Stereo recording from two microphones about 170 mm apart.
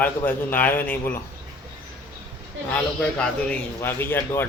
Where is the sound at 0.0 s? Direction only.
10° left (ahead or behind).